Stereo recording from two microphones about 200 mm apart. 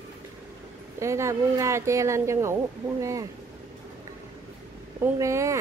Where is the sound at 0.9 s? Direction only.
15° right (ahead or behind).